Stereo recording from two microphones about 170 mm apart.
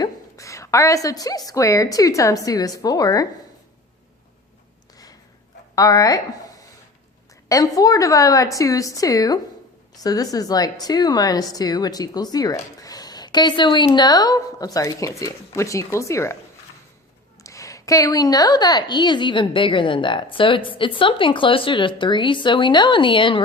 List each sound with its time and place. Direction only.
0.0 s a woman's voice: 20° left (ahead or behind)
5.7 s speech: 20° left (ahead or behind)
7.4 s a woman's voice: 20° left (ahead or behind)
17.4 s a woman's voice: 20° left (ahead or behind)